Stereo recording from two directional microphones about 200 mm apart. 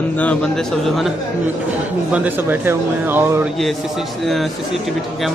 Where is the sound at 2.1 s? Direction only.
10° right (ahead or behind).